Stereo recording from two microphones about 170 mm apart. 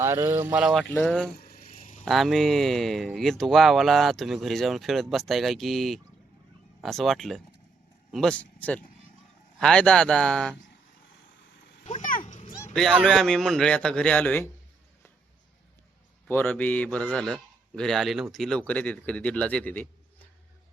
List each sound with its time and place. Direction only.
0.0 s speech: 15° right (ahead or behind); by 1.3 s 5° left (ahead or behind)
1.4 s a sound: 65° left (ahead or behind); by 2.0 s 50° left (ahead or behind)
2.0 s a man's voice: centre (ahead or behind)
11.9 s a sound: 50° left (ahead or behind)
12.7 s speech: centre (ahead or behind)
16.3 s a man's voice: 10° left (ahead or behind)